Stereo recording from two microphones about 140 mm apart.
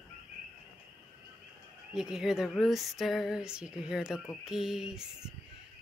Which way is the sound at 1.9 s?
5° right (ahead or behind).